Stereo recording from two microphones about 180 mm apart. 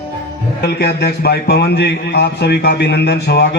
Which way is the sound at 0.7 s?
65° left (ahead or behind).